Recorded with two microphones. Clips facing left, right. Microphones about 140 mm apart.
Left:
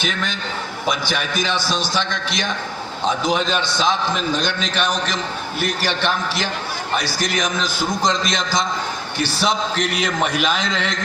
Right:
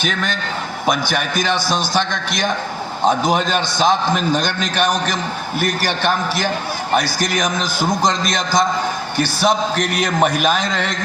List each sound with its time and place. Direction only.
0.0 s a man's voice: 50° right (ahead or behind)